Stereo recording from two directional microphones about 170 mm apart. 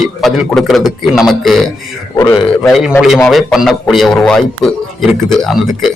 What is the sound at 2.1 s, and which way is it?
Speech, 20° left (ahead or behind).